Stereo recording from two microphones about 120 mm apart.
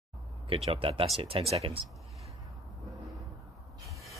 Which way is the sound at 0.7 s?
50° right (ahead or behind).